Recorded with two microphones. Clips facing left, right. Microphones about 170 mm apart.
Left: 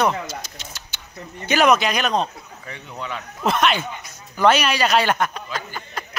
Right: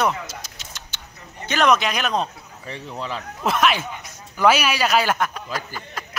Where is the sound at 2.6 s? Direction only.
30° right (ahead or behind).